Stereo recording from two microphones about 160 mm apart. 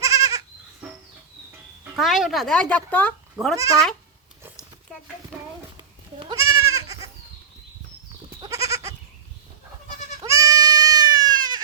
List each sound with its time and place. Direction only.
0.0 s goat: 20° right (ahead or behind)
2.0 s speech: centre (ahead or behind)
6.3 s goat: 20° right (ahead or behind)
8.4 s goat: 20° right (ahead or behind)
10.2 s goat: 20° right (ahead or behind)